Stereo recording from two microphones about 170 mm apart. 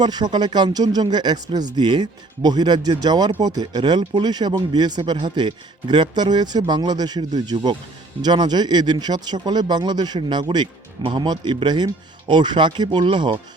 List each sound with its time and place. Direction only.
0.0 s speech: 25° right (ahead or behind)